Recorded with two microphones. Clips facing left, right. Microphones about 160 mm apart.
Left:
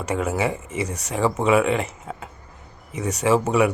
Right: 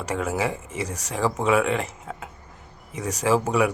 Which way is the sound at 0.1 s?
5° left (ahead or behind).